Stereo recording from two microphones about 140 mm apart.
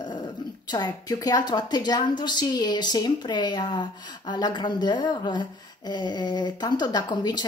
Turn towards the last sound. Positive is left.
turn(degrees=30)  # may be behind; listen again after turning